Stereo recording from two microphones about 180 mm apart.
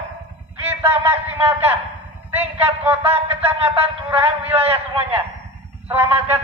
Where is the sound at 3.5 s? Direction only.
35° right (ahead or behind).